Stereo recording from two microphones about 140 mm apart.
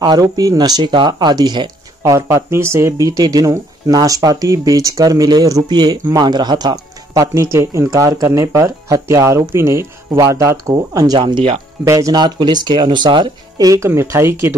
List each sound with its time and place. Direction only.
0.0 s speech: 25° right (ahead or behind)
11.1 s speech: 35° right (ahead or behind)
11.8 s speech: 20° right (ahead or behind)